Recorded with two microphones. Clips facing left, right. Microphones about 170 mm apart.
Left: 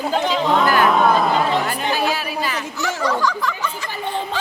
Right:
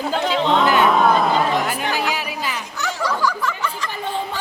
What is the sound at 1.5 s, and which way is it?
A woman's voice, 10° right (ahead or behind).